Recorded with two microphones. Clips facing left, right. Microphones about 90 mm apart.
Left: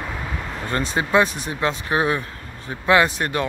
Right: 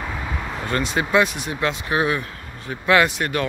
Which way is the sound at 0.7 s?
35° left (ahead or behind).